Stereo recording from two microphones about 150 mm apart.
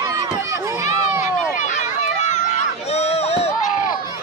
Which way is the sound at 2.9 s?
45° left (ahead or behind).